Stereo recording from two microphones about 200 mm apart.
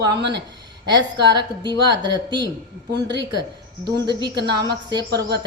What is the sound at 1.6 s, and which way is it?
Speech, 20° right (ahead or behind).